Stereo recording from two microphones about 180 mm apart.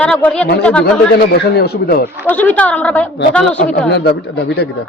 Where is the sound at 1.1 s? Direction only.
65° left (ahead or behind).